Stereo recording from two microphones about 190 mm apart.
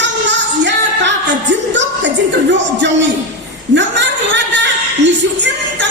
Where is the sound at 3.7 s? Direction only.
65° right (ahead or behind).